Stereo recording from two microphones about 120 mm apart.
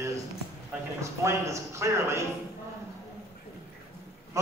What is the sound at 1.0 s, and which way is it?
A man's voice, 25° right (ahead or behind).